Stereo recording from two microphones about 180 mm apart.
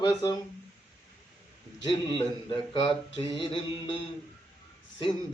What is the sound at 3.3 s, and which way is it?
Speech, 30° left (ahead or behind).